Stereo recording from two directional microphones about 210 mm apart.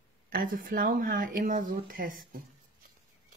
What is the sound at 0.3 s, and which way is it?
Speech, 40° right (ahead or behind).